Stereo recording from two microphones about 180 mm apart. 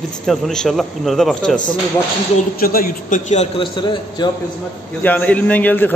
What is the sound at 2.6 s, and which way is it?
A man's voice, 50° left (ahead or behind).